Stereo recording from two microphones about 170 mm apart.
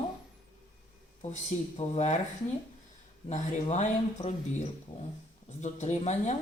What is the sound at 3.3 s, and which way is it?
Speech, 45° left (ahead or behind).